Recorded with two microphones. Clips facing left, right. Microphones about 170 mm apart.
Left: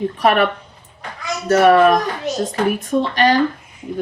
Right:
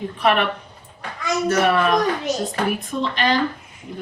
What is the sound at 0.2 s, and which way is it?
Speech, 45° left (ahead or behind).